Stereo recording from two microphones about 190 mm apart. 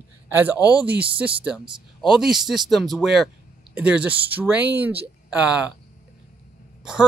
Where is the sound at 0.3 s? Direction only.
10° right (ahead or behind).